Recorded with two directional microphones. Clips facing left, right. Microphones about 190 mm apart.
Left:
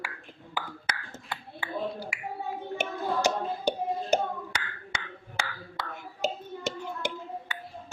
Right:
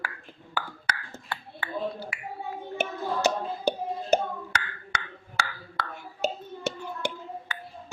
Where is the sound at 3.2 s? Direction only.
15° left (ahead or behind).